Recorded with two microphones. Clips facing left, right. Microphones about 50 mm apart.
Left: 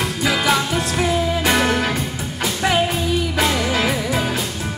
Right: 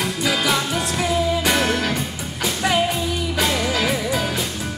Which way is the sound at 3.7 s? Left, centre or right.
Left.